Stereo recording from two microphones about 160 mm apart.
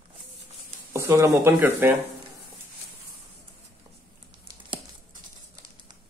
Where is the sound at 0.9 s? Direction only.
15° right (ahead or behind).